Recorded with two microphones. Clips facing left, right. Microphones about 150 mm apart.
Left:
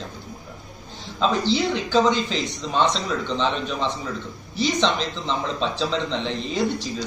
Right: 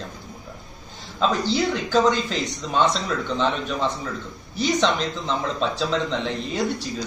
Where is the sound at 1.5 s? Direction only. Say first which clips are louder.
Even; 5° right (ahead or behind).